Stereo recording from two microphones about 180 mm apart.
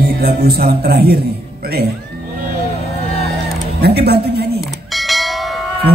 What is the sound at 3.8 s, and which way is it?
Speech, 60° right (ahead or behind).